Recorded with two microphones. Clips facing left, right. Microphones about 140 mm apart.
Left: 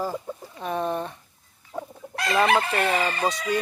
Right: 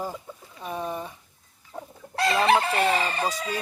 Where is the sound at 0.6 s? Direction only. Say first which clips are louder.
Left 4 dB; 65° left (ahead or behind).